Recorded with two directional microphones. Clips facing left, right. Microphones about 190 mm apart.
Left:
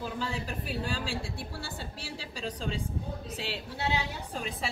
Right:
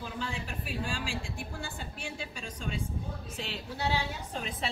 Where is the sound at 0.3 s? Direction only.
35° left (ahead or behind).